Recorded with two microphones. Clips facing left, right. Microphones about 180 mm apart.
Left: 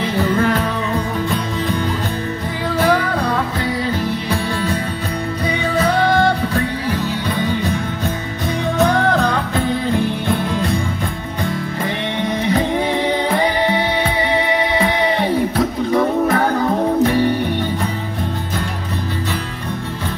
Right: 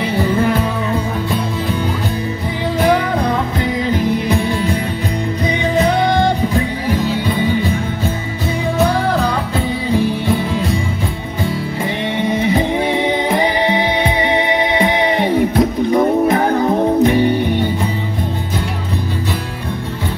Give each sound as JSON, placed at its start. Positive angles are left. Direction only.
{"t": 0.2, "sound": "music", "side_deg": -10}
{"t": 2.8, "sound": "music", "side_deg": -15}
{"t": 6.1, "sound": "music", "side_deg": -15}
{"t": 8.7, "sound": "music", "side_deg": -5}
{"t": 15.9, "sound": "music", "side_deg": -20}